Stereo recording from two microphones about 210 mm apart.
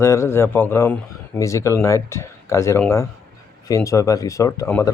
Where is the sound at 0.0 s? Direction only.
15° left (ahead or behind).